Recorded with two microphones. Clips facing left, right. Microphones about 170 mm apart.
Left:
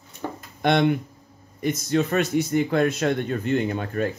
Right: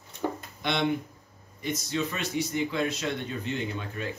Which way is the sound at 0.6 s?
55° left (ahead or behind).